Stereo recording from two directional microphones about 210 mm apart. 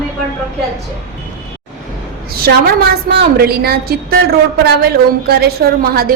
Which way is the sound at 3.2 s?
50° right (ahead or behind).